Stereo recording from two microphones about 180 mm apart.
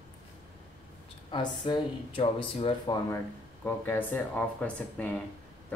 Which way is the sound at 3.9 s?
10° left (ahead or behind).